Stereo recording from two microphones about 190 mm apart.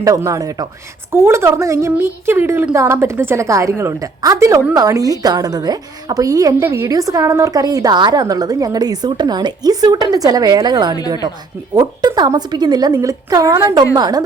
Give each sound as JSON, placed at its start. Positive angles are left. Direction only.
{"t": 0.3, "sound": "a man's voice", "side_deg": -15}